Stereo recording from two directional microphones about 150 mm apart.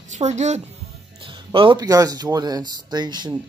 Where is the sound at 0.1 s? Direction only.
50° right (ahead or behind).